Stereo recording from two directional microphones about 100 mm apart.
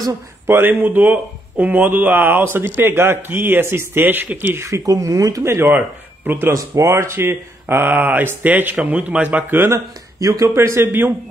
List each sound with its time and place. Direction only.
0.5 s speech: 20° right (ahead or behind)
10.2 s speech: 30° right (ahead or behind)